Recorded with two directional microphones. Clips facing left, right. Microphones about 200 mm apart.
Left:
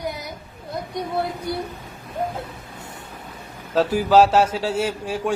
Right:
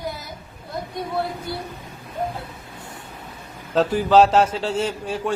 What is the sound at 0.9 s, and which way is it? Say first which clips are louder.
Speech: left 1 dB; 20° left (ahead or behind).